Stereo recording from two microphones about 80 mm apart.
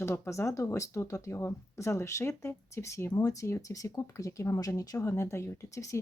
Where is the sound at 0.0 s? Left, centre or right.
Left.